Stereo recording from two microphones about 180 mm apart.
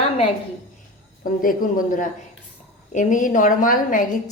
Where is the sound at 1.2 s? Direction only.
50° left (ahead or behind).